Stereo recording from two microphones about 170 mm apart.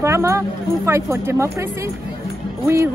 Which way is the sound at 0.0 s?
15° right (ahead or behind).